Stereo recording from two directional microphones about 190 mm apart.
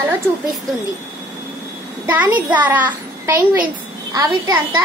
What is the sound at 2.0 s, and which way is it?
A child's voice, 10° right (ahead or behind).